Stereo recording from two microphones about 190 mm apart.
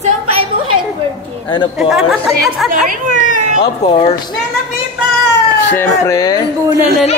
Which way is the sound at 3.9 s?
30° left (ahead or behind).